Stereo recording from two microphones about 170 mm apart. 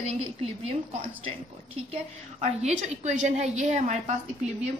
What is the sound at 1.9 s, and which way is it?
A woman's voice, 40° right (ahead or behind).